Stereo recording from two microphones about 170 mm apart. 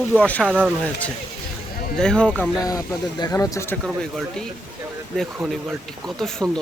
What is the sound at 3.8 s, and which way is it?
Speech, centre (ahead or behind).